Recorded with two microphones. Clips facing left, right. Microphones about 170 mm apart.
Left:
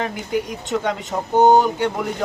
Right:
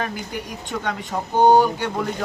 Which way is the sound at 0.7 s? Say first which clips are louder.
Left 4 dB; 25° left (ahead or behind).